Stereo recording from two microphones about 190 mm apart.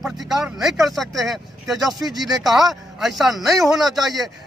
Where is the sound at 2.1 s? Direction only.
20° right (ahead or behind).